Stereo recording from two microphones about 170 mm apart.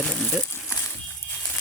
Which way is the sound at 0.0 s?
5° left (ahead or behind).